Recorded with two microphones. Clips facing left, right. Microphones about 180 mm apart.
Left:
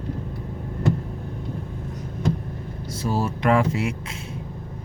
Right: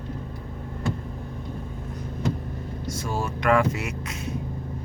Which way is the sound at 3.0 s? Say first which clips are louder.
Left 3 dB; 35° left (ahead or behind).